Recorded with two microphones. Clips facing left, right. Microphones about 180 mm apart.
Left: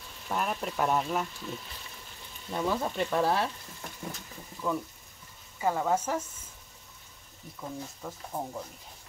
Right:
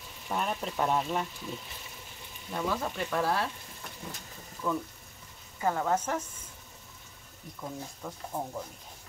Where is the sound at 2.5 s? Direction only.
25° left (ahead or behind).